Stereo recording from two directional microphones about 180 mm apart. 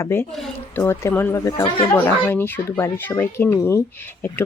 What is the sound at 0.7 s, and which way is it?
Speech, 15° left (ahead or behind).